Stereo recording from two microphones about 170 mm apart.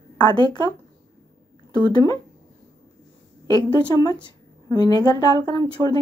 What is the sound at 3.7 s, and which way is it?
Speech, 25° left (ahead or behind).